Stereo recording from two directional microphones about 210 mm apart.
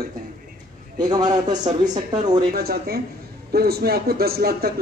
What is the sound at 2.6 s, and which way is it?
A man's voice, 45° right (ahead or behind).